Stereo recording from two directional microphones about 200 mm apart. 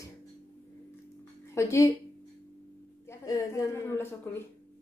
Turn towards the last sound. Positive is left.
turn(degrees=10)  # may be behind; listen again after turning